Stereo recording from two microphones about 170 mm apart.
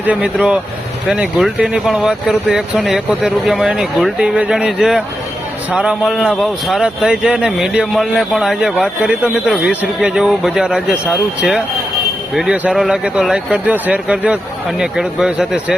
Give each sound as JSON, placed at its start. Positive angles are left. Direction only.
{"t": 0.0, "sound": "speech", "side_deg": -5}
{"t": 12.3, "sound": "speech", "side_deg": -5}